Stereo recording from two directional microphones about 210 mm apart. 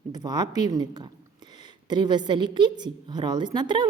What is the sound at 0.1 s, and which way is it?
A woman's voice, 20° right (ahead or behind).